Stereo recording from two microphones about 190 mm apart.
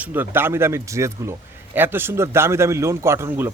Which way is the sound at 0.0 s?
10° right (ahead or behind).